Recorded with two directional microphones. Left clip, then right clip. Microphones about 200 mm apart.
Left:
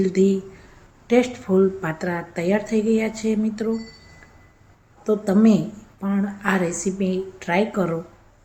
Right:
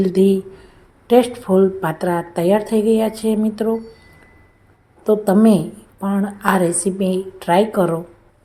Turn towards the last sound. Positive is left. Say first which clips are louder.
# right 7 dB
turn(degrees=-20)  # may be behind; listen again after turning